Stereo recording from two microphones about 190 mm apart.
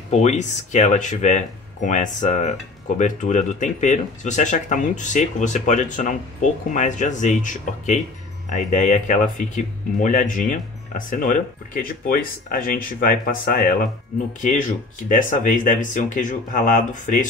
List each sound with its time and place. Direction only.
0.1 s speech: 35° left (ahead or behind)